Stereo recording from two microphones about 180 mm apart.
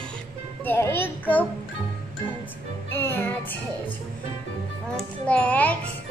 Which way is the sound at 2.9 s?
15° left (ahead or behind).